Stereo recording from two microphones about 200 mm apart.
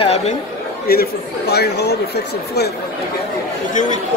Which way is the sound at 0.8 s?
50° left (ahead or behind).